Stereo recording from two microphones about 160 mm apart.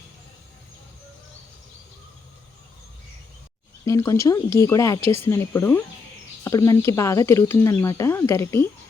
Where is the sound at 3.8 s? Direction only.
20° left (ahead or behind).